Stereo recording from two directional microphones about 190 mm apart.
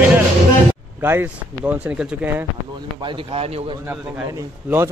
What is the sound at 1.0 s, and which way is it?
Speech, 10° right (ahead or behind).